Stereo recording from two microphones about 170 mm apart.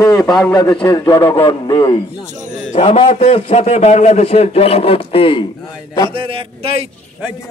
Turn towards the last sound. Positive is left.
turn(degrees=-35)  # may be behind; listen again after turning